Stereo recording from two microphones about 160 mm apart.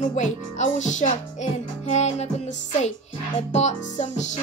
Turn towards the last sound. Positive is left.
turn(degrees=45)  # may be behind; listen again after turning